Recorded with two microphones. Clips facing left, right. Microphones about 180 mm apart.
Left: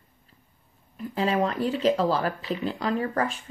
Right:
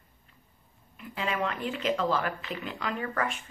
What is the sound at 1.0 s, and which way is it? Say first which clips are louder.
Speech: left 7 dB; 35° left (ahead or behind).